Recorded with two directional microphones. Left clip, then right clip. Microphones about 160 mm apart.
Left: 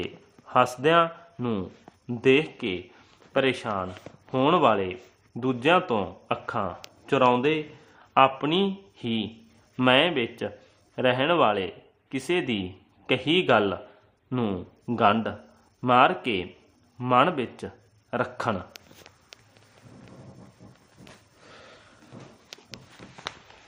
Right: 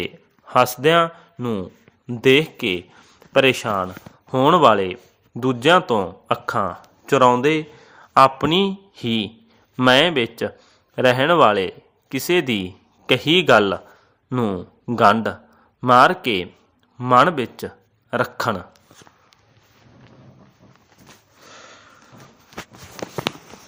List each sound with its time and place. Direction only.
0.0 s speech: 20° right (ahead or behind)
1.4 s speech: 10° right (ahead or behind)
2.0 s a man's voice: 25° right (ahead or behind)
21.4 s sniff: 35° right (ahead or behind)